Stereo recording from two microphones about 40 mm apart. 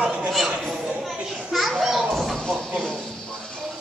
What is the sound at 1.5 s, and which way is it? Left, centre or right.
Children playing, centre.